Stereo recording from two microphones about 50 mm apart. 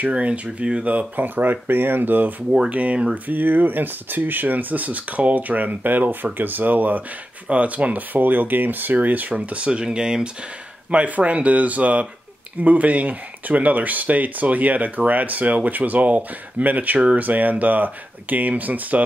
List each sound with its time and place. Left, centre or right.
0.0 s speech: right
2.7 s speech: right
3.3 s speech: right; by 10.3 s centre
10.9 s speech: right